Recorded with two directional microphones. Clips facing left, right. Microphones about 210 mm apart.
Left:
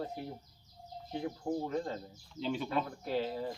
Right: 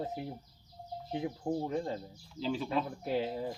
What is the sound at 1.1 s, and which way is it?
Speech, 15° right (ahead or behind).